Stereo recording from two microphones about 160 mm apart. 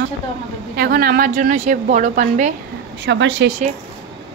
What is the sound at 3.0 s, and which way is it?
Speech, 90° right.